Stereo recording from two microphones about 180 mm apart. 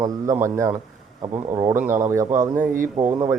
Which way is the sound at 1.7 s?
45° right (ahead or behind).